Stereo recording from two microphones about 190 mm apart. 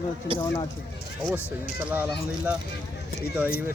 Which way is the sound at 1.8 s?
10° right (ahead or behind).